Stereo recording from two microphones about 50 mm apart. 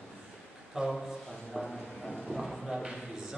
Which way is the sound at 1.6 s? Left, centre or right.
Centre.